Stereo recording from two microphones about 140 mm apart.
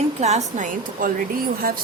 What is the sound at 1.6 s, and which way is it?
Speech, 85° right.